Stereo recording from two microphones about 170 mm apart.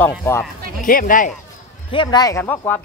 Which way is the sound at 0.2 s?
10° left (ahead or behind).